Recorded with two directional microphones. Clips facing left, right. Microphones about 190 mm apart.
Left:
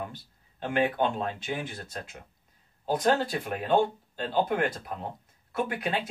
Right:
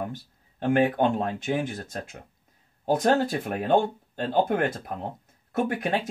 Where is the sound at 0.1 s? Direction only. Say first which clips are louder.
Right 8 dB; 45° right (ahead or behind).